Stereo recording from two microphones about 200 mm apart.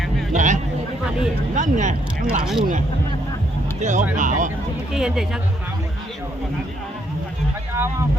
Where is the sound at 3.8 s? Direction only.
35° right (ahead or behind).